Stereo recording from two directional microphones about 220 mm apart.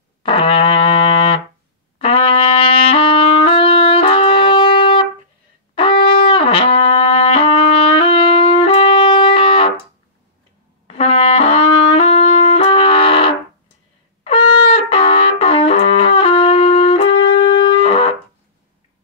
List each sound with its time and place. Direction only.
0.2 s brass instrument: 25° left (ahead or behind)
2.0 s trumpet: 25° left (ahead or behind)
10.9 s brass instrument: 25° left (ahead or behind)
14.2 s music: 25° left (ahead or behind)